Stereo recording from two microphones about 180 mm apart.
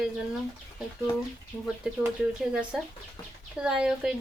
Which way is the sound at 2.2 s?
5° right (ahead or behind).